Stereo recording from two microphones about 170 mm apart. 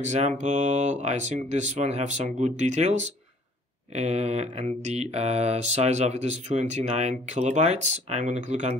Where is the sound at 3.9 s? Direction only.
40° right (ahead or behind).